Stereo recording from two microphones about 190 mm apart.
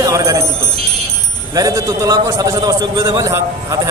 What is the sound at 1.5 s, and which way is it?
A man's voice, 20° right (ahead or behind).